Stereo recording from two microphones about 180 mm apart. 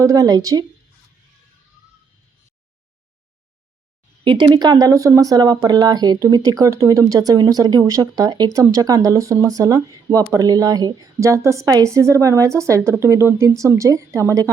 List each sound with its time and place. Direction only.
0.0 s speech: 20° right (ahead or behind)
4.2 s speech: 25° right (ahead or behind)